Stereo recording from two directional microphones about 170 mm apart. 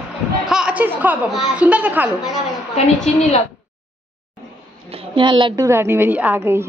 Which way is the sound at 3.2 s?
40° left (ahead or behind).